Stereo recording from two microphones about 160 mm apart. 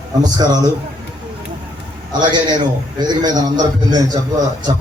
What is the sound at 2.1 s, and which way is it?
A man's voice, 30° right (ahead or behind).